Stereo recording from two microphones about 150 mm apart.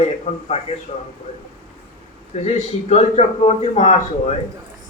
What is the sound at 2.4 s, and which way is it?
A man's voice, 45° left (ahead or behind).